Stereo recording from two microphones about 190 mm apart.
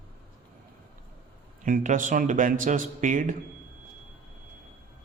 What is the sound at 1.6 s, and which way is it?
A man's voice, 45° right (ahead or behind).